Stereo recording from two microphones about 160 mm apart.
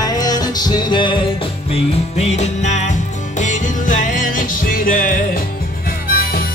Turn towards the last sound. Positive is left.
turn(degrees=70)  # may be behind; listen again after turning